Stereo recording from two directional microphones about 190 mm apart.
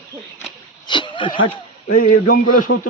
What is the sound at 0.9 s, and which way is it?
Speech, 25° left (ahead or behind).